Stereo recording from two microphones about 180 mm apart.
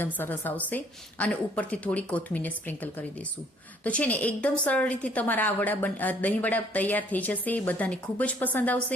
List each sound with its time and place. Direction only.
0.0 s a woman's voice: 10° left (ahead or behind)